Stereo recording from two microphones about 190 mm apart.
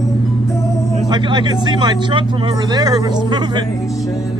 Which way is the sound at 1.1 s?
25° right (ahead or behind).